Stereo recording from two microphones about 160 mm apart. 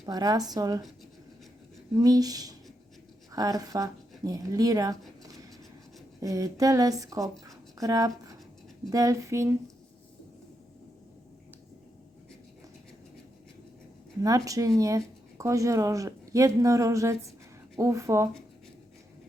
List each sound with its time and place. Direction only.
0.0 s speech: 25° right (ahead or behind)
2.0 s speech: 25° right (ahead or behind)
5.2 s a sound: 20° right (ahead or behind)
6.1 s speech: 20° right (ahead or behind)
14.2 s speech: 20° right (ahead or behind)